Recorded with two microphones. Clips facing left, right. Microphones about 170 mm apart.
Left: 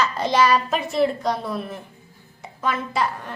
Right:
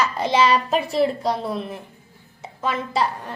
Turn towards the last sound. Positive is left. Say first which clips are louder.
# right 1 dB
turn(degrees=-30)  # may be behind; listen again after turning